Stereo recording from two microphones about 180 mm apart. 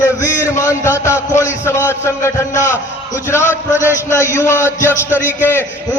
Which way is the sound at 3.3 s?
10° left (ahead or behind).